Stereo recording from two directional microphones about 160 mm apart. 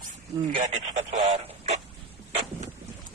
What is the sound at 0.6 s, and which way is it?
Radio, 50° right (ahead or behind).